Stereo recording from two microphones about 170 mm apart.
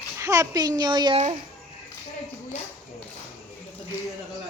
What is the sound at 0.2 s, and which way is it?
A child's voice, 20° right (ahead or behind).